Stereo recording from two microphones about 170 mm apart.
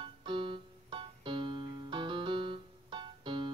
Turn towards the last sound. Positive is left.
turn(degrees=-30)  # may be behind; listen again after turning